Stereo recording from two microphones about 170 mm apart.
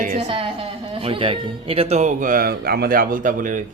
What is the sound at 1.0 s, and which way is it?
Speech, 30° right (ahead or behind).